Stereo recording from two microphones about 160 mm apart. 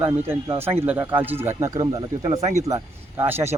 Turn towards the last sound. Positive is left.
turn(degrees=-15)  # may be behind; listen again after turning